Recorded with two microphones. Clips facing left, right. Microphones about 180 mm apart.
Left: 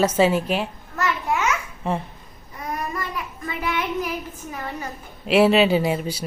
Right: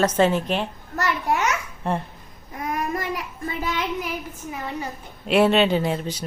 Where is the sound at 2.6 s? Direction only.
50° right (ahead or behind).